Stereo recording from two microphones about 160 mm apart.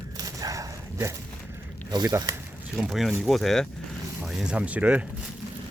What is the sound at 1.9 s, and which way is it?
Speech, 25° right (ahead or behind).